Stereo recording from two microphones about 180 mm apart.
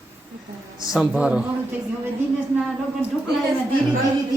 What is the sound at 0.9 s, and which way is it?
Speech, 5° right (ahead or behind).